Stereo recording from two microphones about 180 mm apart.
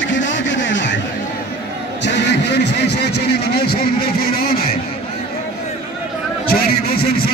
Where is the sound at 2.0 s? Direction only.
75° left (ahead or behind); by 4.6 s 55° left (ahead or behind).